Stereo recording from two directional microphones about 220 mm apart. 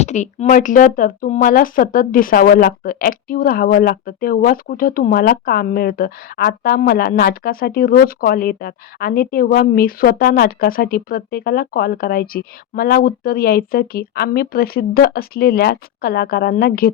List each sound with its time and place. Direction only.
0.0 s speech: 30° left (ahead or behind)